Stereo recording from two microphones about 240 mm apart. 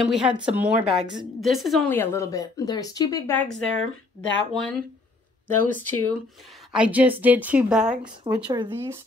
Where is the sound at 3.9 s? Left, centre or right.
Left.